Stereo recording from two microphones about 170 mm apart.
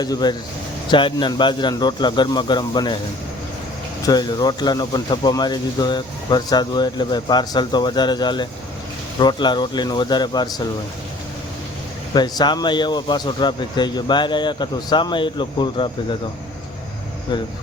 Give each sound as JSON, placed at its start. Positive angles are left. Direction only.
{"t": 0.0, "sound": "speech", "side_deg": 25}
{"t": 4.0, "sound": "speech", "side_deg": 25}
{"t": 12.1, "sound": "speech", "side_deg": 25}